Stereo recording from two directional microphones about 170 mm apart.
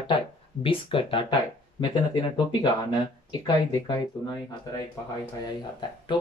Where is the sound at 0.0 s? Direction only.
30° left (ahead or behind).